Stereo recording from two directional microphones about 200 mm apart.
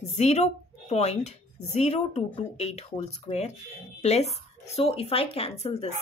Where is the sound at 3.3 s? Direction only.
35° left (ahead or behind).